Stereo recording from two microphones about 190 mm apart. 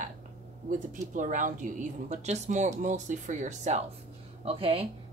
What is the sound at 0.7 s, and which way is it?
A woman's voice, 40° right (ahead or behind).